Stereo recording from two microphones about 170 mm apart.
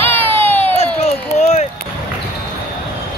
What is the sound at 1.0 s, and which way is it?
Run, 40° left (ahead or behind).